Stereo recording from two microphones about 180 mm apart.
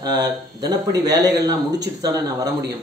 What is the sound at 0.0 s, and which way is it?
A man's voice, 20° right (ahead or behind).